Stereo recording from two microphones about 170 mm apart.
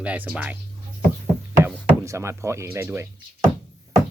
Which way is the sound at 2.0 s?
15° right (ahead or behind).